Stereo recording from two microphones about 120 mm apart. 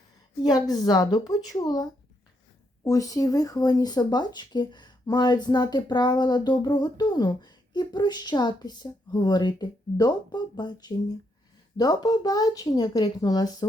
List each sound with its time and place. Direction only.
0.4 s speech: 35° left (ahead or behind)